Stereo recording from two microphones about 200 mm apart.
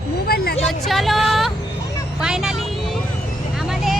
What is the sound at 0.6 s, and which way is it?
Music, centre (ahead or behind).